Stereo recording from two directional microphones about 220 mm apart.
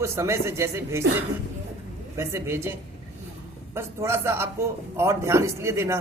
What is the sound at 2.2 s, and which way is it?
A man's voice, 10° right (ahead or behind).